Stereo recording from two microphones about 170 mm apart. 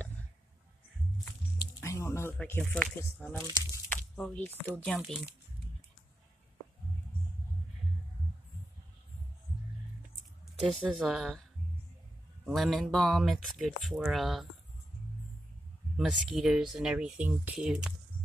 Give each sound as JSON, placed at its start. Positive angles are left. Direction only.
{"t": 1.8, "sound": "a sound", "side_deg": 15}
{"t": 2.4, "sound": "speech", "side_deg": 10}
{"t": 10.6, "sound": "speech", "side_deg": 0}
{"t": 12.4, "sound": "speech", "side_deg": 0}
{"t": 16.0, "sound": "speech", "side_deg": -5}